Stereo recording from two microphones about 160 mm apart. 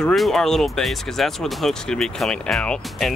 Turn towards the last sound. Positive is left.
turn(degrees=5)  # may be behind; listen again after turning